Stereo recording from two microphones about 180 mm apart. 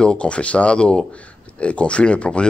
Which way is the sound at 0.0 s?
5° left (ahead or behind).